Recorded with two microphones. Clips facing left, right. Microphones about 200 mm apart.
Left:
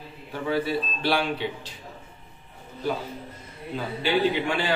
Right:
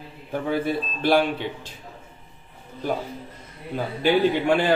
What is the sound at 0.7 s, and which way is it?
Speech, 50° right (ahead or behind).